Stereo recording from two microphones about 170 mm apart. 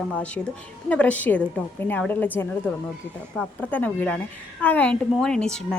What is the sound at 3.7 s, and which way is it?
A woman's voice, 10° left (ahead or behind).